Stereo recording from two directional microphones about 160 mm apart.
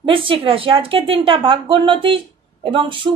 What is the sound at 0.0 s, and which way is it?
A woman's voice, 35° right (ahead or behind).